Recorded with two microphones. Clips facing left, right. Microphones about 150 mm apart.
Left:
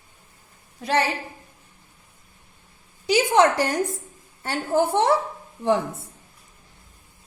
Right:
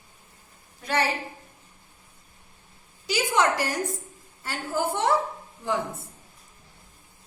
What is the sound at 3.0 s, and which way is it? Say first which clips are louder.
A woman's voice: left 6 dB; 60° left (ahead or behind).